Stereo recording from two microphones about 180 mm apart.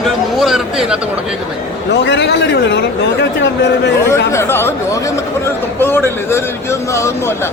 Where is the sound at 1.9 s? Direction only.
75° left (ahead or behind).